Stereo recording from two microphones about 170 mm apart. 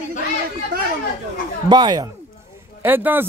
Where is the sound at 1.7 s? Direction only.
25° right (ahead or behind).